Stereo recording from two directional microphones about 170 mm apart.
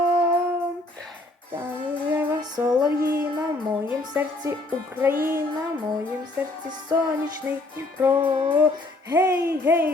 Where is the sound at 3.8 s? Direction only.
10° right (ahead or behind).